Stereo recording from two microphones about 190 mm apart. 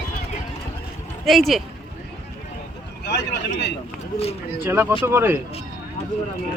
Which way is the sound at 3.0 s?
60° left (ahead or behind).